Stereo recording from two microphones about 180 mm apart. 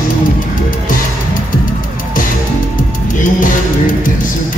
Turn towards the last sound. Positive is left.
turn(degrees=45)  # may be behind; listen again after turning